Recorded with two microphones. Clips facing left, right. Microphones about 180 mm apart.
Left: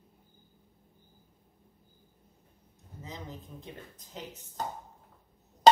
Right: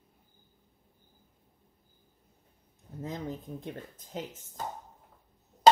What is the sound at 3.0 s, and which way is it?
Speech, 55° right (ahead or behind).